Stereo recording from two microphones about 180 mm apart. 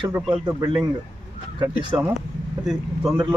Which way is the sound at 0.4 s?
25° right (ahead or behind).